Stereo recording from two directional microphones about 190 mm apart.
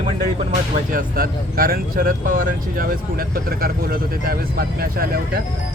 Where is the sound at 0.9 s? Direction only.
50° right (ahead or behind).